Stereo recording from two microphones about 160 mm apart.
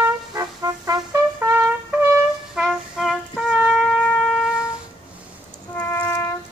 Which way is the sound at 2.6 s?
Centre (ahead or behind).